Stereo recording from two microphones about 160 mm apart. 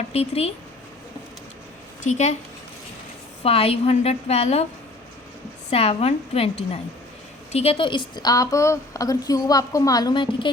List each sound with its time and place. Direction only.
0.1 s a woman's voice: 40° left (ahead or behind)
2.0 s speech: 45° left (ahead or behind)
3.4 s a woman's voice: 35° left (ahead or behind)
5.7 s a woman's voice: 40° left (ahead or behind)
7.5 s a woman's voice: 40° left (ahead or behind)